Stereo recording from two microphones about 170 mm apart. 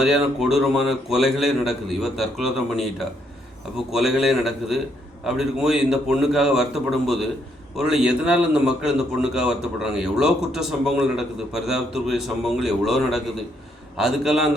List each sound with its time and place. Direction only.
0.0 s a man's voice: centre (ahead or behind)
3.9 s a man's voice: centre (ahead or behind)